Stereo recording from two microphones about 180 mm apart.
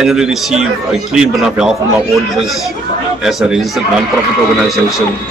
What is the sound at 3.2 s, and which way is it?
Speech, 5° right (ahead or behind).